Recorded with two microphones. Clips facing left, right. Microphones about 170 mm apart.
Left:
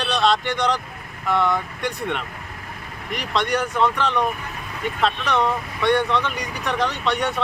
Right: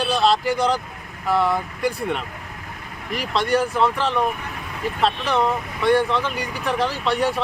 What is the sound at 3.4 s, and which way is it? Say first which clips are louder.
Speech: right 5 dB; 30° right (ahead or behind).